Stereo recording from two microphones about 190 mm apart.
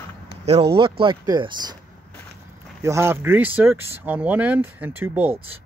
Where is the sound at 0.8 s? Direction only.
25° right (ahead or behind).